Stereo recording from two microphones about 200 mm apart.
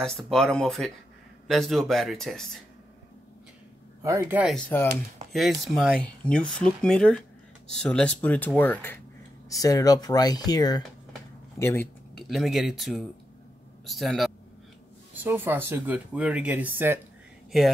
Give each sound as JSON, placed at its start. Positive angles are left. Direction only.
{"t": 0.0, "sound": "speech", "side_deg": 5}
{"t": 4.0, "sound": "speech", "side_deg": -10}
{"t": 12.2, "sound": "speech", "side_deg": 0}
{"t": 15.2, "sound": "speech", "side_deg": -10}